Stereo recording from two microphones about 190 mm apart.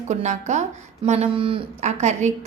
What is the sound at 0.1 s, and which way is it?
A woman's voice, 40° right (ahead or behind).